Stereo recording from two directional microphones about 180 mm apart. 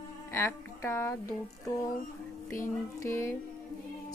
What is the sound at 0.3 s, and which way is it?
Speech, 15° left (ahead or behind).